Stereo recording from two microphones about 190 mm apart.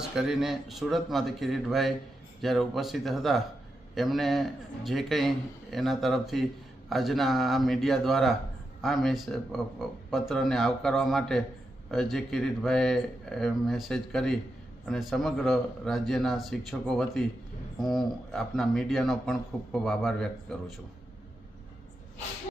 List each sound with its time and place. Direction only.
0.0 s a man's voice: 5° right (ahead or behind)